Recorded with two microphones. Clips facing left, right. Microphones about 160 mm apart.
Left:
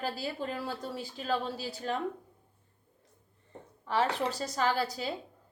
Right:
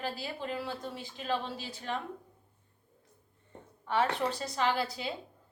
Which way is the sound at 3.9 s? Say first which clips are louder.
Even; 40° left (ahead or behind).